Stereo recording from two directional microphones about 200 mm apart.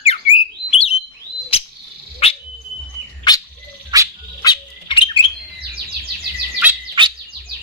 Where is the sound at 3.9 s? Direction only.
20° right (ahead or behind).